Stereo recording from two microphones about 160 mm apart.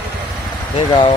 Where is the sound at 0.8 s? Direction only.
30° left (ahead or behind).